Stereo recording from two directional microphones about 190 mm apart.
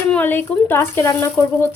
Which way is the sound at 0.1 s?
10° left (ahead or behind).